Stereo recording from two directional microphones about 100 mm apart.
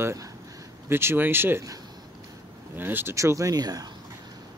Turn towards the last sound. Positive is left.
turn(degrees=-40)  # may be behind; listen again after turning